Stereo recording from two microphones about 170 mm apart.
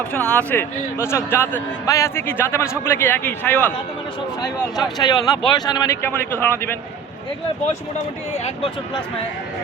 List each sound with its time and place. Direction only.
0.1 s a man's voice: 10° left (ahead or behind)
4.9 s speech: 25° left (ahead or behind)